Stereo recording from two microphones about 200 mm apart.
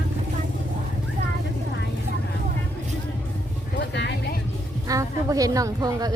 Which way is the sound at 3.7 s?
60° left (ahead or behind).